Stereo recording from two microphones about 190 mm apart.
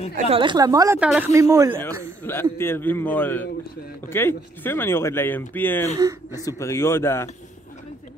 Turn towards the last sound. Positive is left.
turn(degrees=15)  # may be behind; listen again after turning